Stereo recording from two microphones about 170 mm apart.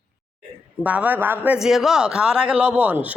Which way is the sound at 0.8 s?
10° right (ahead or behind).